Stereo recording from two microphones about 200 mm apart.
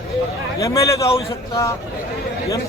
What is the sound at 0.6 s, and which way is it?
A man's voice, 15° left (ahead or behind).